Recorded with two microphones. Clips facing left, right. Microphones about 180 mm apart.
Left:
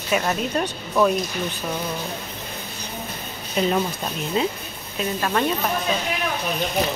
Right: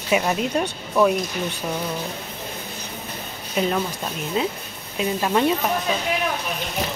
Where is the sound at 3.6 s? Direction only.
10° right (ahead or behind).